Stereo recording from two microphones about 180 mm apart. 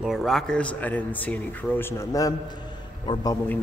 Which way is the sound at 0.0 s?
Centre (ahead or behind).